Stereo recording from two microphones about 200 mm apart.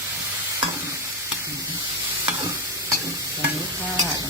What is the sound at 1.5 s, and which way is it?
Stir, 15° right (ahead or behind).